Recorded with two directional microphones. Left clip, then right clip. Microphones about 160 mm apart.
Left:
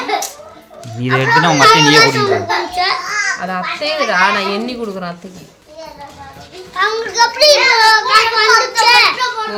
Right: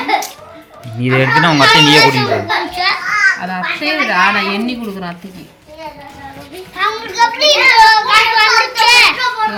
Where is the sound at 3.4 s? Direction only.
90° left.